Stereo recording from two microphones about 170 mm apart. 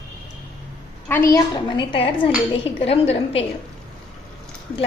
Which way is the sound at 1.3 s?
25° left (ahead or behind).